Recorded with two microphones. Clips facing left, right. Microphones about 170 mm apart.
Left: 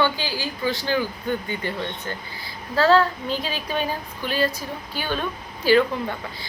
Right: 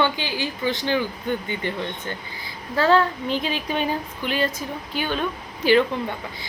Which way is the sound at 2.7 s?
20° right (ahead or behind).